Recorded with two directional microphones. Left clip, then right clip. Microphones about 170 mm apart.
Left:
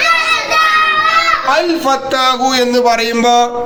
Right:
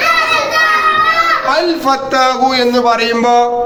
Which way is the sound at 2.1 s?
10° left (ahead or behind).